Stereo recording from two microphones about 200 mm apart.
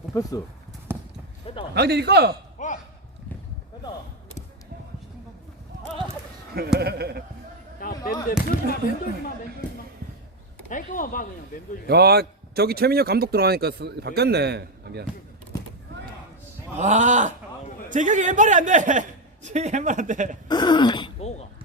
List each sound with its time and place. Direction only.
0.1 s speech: 15° left (ahead or behind)
0.9 s clip-clop: 10° right (ahead or behind)
1.7 s a man's voice: 55° right (ahead or behind)
2.6 s a sound: 40° left (ahead or behind)
6.7 s speech: 50° right (ahead or behind)
7.8 s basketball bounce: 45° left (ahead or behind)
8.3 s speech: 45° left (ahead or behind)
10.7 s speech: 40° left (ahead or behind)
11.9 s speech: 55° right (ahead or behind)
15.5 s a sound: 20° left (ahead or behind)
16.7 s a man's voice: 35° right (ahead or behind)
20.5 s speech: 20° left (ahead or behind)